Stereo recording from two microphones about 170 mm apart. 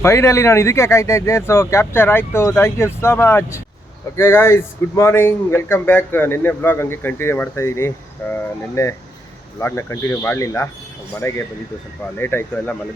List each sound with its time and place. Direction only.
0.0 s speech: 15° left (ahead or behind)